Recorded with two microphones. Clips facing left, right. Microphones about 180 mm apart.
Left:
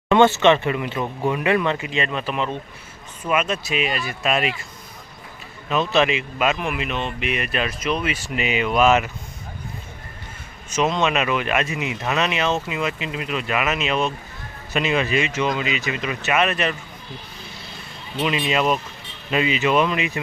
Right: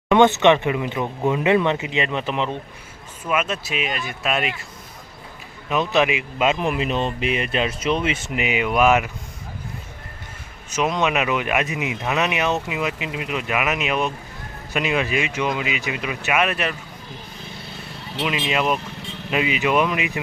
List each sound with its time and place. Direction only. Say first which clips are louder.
0.1 s speech: even; 20° right (ahead or behind)
3.2 s speech: left 1 dB; centre (ahead or behind)
5.6 s speech: even; 15° right (ahead or behind)
6.5 s speech: right 3 dB; 30° right (ahead or behind); by 9.0 s 10° right (ahead or behind)
10.7 s speech: left 1 dB; 10° right (ahead or behind)
18.2 s speech: left 2 dB; 5° right (ahead or behind)